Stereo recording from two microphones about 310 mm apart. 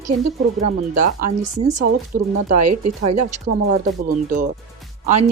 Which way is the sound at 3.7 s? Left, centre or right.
Right.